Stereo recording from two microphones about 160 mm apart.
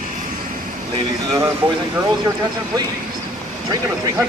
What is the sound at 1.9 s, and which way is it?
Speech, 20° right (ahead or behind).